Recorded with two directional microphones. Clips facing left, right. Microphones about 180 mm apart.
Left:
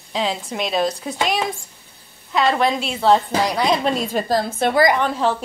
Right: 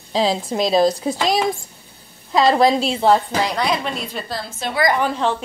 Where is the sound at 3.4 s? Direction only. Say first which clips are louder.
Left 1 dB; 10° left (ahead or behind).